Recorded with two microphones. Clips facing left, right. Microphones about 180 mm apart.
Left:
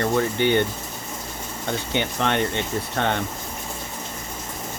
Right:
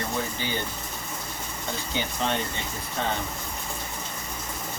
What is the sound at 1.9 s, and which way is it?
Speech, 65° left (ahead or behind).